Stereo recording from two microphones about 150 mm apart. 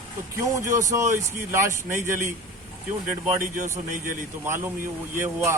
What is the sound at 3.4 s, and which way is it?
Speech, 60° right (ahead or behind).